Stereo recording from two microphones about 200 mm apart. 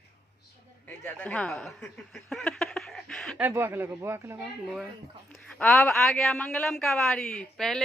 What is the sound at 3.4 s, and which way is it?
Speech, 10° right (ahead or behind).